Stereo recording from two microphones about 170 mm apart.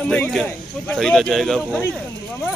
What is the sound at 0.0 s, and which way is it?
A man's voice, 5° left (ahead or behind).